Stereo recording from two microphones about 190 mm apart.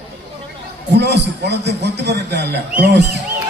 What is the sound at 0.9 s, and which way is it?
Speech, 65° right (ahead or behind).